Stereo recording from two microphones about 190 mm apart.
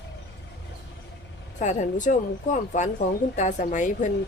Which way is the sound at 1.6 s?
40° left (ahead or behind).